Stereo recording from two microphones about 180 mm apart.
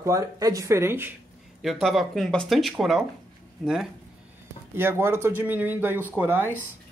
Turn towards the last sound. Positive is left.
turn(degrees=-10)  # may be behind; listen again after turning